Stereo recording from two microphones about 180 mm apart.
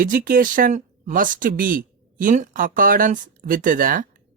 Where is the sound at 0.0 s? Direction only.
50° right (ahead or behind).